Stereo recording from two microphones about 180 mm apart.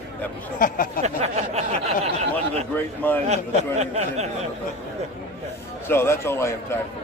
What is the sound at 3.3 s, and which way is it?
Speech, 40° right (ahead or behind).